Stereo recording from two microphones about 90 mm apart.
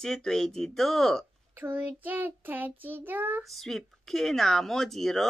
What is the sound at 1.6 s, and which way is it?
Child singing, 25° right (ahead or behind).